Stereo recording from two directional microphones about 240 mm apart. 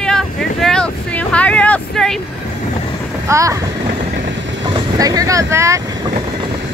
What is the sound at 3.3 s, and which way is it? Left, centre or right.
Speech, centre.